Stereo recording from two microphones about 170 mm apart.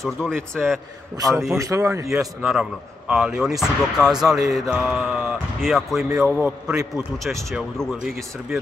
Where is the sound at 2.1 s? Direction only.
Centre (ahead or behind).